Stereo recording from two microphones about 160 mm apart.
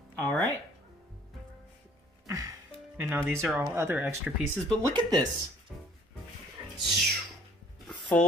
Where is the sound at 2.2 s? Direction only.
20° right (ahead or behind).